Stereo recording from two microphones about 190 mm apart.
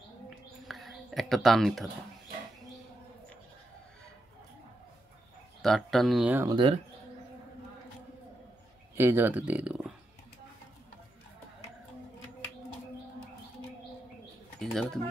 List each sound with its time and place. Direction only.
0.7 s a sound: centre (ahead or behind)
5.6 s speech: centre (ahead or behind)
6.4 s speech: 25° right (ahead or behind)
8.9 s speech: 10° right (ahead or behind)
14.6 s speech: centre (ahead or behind)